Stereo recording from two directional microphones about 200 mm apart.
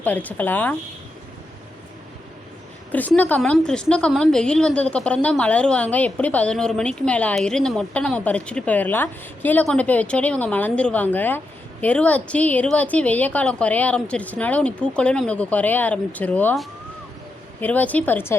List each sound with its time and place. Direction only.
0.0 s a woman's voice: 10° left (ahead or behind)
2.9 s a woman's voice: 10° left (ahead or behind)